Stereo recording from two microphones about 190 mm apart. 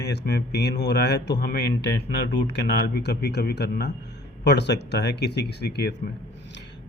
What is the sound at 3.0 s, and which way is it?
Speech, 60° left (ahead or behind).